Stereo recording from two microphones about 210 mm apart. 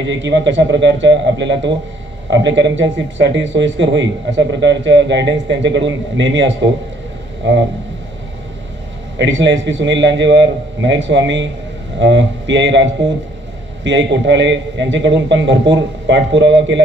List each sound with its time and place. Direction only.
0.0 s speech: 60° right (ahead or behind)
9.2 s speech: 60° right (ahead or behind)